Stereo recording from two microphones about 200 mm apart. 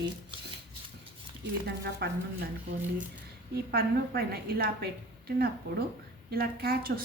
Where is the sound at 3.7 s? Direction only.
50° right (ahead or behind).